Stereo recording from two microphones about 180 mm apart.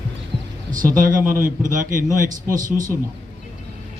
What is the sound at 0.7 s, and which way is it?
Speech, 50° right (ahead or behind).